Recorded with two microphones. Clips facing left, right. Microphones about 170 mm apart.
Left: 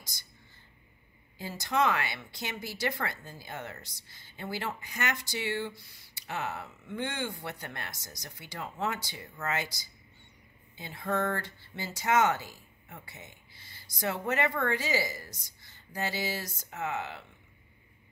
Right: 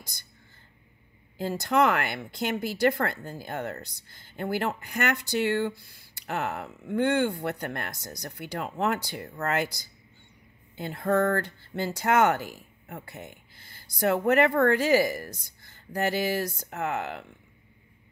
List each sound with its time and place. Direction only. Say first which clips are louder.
1.4 s speech: right 6 dB; 55° right (ahead or behind)
10.8 s speech: right 7 dB; 60° right (ahead or behind)